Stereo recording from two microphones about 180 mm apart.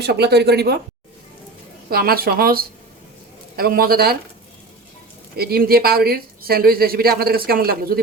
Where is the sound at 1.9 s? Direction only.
55° right (ahead or behind).